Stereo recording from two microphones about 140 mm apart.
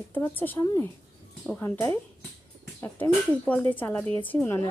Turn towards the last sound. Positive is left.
turn(degrees=15)  # may be behind; listen again after turning